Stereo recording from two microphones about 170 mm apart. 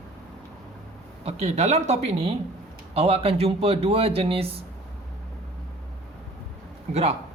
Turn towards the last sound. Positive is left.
turn(degrees=-40)  # may be behind; listen again after turning